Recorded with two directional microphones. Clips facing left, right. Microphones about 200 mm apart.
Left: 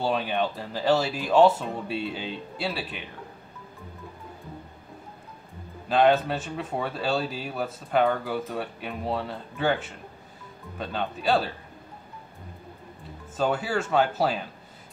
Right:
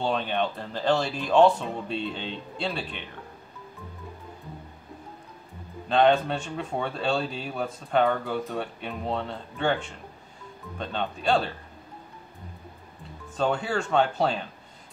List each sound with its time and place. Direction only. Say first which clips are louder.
0.0 s speech: left 1 dB; 5° left (ahead or behind)
5.9 s speech: even; 5° left (ahead or behind)
13.4 s speech: even; 5° left (ahead or behind)